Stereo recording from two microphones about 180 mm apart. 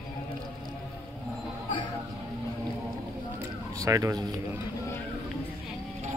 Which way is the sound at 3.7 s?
20° right (ahead or behind).